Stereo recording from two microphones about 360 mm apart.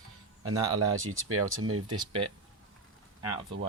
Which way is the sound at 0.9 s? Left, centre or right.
Right.